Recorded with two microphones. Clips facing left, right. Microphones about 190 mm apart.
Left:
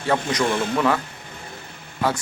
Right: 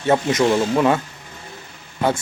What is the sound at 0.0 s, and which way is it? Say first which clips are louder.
A man's voice: right 5 dB; 25° right (ahead or behind).